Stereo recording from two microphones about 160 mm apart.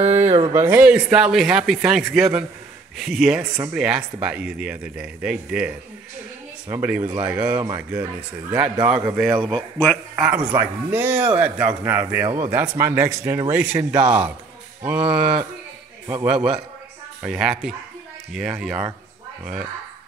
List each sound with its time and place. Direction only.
0.2 s a sound: 40° right (ahead or behind)
0.5 s a man's voice: 15° right (ahead or behind)
7.5 s speech: 25° right (ahead or behind)
7.9 s a man's voice: 10° right (ahead or behind)